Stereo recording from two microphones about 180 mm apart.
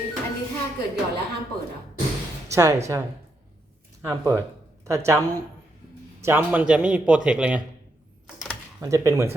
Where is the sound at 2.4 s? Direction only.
15° right (ahead or behind).